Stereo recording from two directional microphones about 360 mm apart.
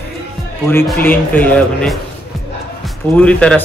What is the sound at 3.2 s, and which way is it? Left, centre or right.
Speech, centre.